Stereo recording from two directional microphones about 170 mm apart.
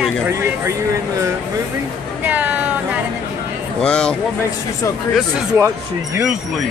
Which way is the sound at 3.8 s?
5° left (ahead or behind).